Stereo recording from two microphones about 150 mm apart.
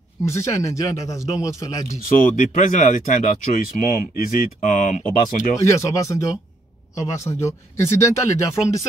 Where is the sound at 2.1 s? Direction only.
55° left (ahead or behind).